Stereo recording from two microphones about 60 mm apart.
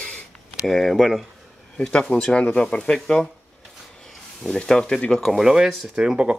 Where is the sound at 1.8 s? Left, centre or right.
Centre.